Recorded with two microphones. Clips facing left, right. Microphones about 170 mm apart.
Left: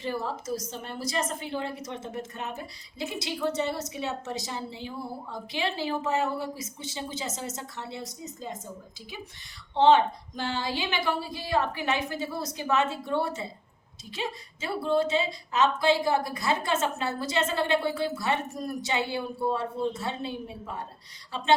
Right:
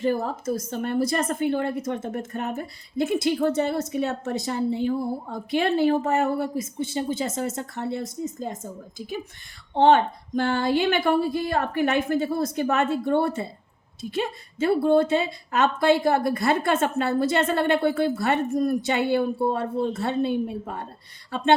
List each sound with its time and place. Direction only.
0.0 s a woman's voice: 50° right (ahead or behind)